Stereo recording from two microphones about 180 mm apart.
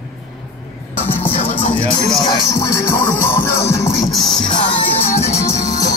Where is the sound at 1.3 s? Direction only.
30° left (ahead or behind).